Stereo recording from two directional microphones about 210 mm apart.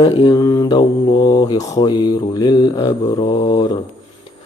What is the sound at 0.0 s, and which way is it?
Mantra, 20° left (ahead or behind).